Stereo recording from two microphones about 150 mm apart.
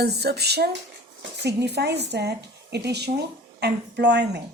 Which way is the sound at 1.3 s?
90° right.